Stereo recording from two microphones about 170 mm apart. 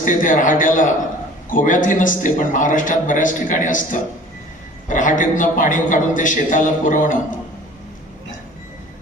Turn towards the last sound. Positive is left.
turn(degrees=50)  # may be behind; listen again after turning